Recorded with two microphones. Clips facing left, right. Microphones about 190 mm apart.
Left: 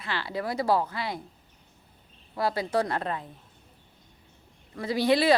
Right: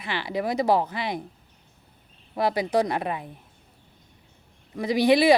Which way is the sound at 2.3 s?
20° right (ahead or behind).